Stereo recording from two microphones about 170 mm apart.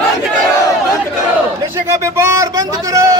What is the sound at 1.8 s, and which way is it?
A man's voice, 15° right (ahead or behind).